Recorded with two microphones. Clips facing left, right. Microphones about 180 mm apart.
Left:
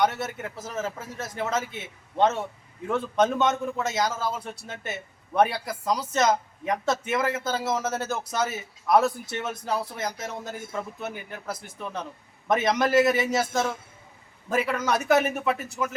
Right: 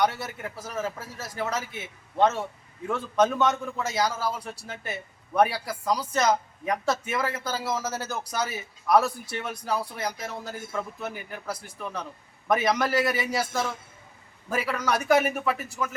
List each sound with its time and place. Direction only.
0.0 s speech: 25° left (ahead or behind)